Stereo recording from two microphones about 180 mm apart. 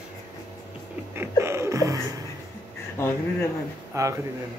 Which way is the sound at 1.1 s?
15° right (ahead or behind).